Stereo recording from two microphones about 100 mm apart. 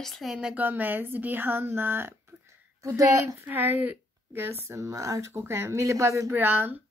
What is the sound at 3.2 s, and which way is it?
Speech, 20° right (ahead or behind).